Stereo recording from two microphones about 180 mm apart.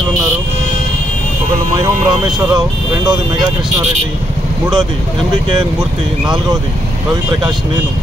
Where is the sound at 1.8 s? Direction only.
25° right (ahead or behind).